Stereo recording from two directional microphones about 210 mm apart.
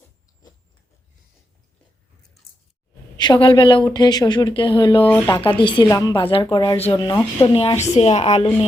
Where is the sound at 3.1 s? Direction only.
20° left (ahead or behind).